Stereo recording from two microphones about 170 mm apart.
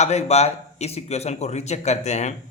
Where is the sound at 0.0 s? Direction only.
40° left (ahead or behind).